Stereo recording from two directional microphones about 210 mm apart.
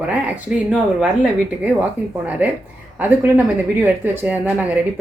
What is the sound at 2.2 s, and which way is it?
Speech, 5° right (ahead or behind).